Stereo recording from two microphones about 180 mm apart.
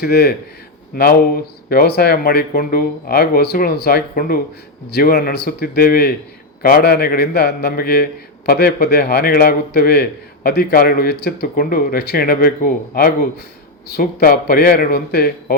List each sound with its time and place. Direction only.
0.0 s a man's voice: 60° left (ahead or behind)